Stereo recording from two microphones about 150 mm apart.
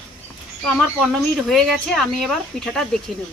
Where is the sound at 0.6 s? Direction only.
Centre (ahead or behind).